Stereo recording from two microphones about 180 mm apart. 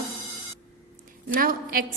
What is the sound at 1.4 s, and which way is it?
Speech, 55° right (ahead or behind).